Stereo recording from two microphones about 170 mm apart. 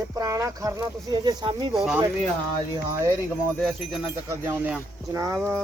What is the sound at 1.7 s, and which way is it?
Speech, 5° right (ahead or behind).